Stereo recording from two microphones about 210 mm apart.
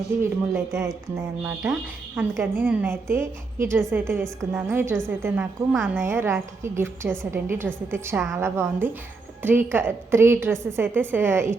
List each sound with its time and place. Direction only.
0.2 s a woman's voice: 10° right (ahead or behind)
2.1 s a woman's voice: 5° right (ahead or behind)
5.7 s a woman's voice: centre (ahead or behind)
6.0 s a woman's voice: 10° right (ahead or behind)